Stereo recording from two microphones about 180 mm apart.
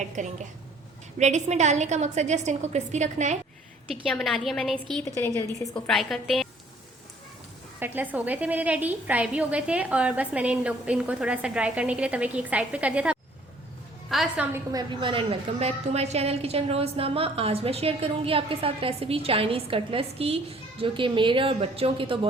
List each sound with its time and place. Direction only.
0.0 s a woman's voice: 45° right (ahead or behind)
4.1 s a woman's voice: centre (ahead or behind)
7.8 s a woman's voice: 10° right (ahead or behind)
14.5 s a woman's voice: 20° right (ahead or behind)